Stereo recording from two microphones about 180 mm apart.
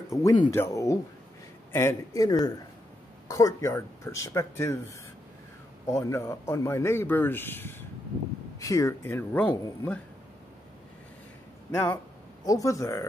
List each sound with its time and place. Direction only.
0.1 s speech: 20° left (ahead or behind)
11.7 s speech: 15° left (ahead or behind)